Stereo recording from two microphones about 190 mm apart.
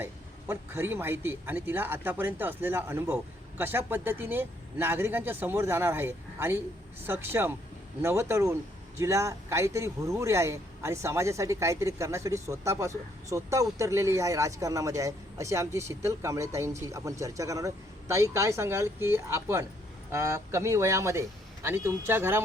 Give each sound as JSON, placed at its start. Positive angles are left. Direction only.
{"t": 0.0, "sound": "speech", "side_deg": -10}